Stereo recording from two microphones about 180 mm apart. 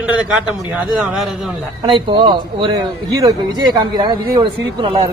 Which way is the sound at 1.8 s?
25° right (ahead or behind).